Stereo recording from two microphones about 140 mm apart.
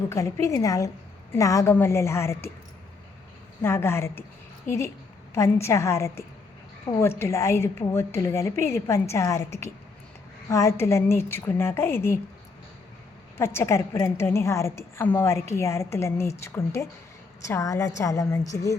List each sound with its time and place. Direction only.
0.1 s a woman's voice: 20° left (ahead or behind)
3.6 s a woman's voice: 15° left (ahead or behind)
5.3 s a woman's voice: 20° left (ahead or behind)
13.4 s a woman's voice: 20° left (ahead or behind)